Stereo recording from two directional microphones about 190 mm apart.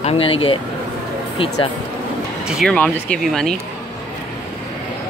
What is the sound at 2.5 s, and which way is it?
A man's voice, centre (ahead or behind).